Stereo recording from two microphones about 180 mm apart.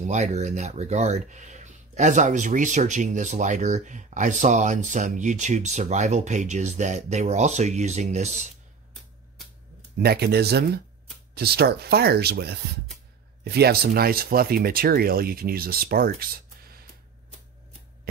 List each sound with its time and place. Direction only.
0.0 s speech: 40° right (ahead or behind)
9.9 s speech: 60° right (ahead or behind)